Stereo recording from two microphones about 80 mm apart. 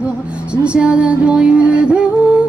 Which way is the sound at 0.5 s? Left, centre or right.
Centre.